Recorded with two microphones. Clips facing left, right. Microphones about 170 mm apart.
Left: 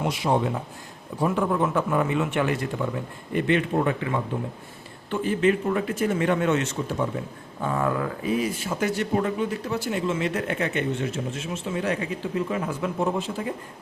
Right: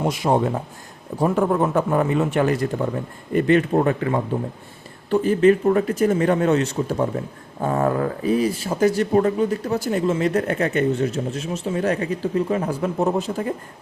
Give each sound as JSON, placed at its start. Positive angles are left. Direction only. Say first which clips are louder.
{"t": 0.0, "sound": "speech", "louder": "right 4 dB", "side_deg": -45}